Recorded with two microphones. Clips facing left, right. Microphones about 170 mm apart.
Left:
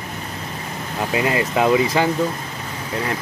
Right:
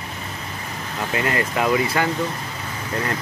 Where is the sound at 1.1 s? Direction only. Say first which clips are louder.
Left 3 dB; 20° left (ahead or behind).